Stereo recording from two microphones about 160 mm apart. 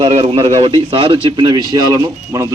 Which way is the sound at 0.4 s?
35° right (ahead or behind).